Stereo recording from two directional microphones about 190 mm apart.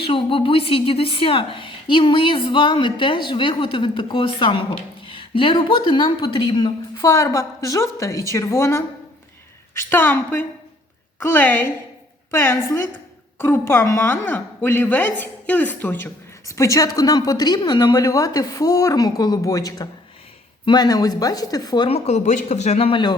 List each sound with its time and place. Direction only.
0.0 s a woman's voice: 30° left (ahead or behind)